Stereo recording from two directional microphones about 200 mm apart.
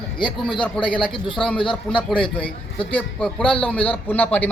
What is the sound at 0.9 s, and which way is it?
Speech, 25° left (ahead or behind).